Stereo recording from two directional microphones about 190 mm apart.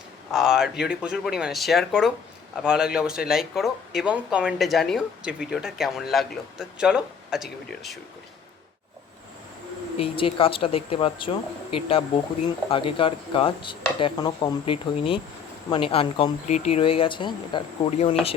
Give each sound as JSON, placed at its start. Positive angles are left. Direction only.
{"t": 0.3, "sound": "speech", "side_deg": -5}
{"t": 10.0, "sound": "speech", "side_deg": 30}